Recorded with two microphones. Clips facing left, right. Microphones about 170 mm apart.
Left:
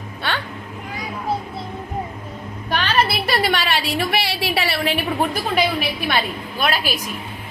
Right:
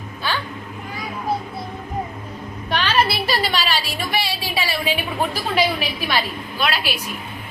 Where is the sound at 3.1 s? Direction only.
60° left (ahead or behind).